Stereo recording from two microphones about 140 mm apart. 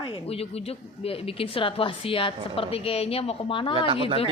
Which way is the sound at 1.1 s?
40° left (ahead or behind).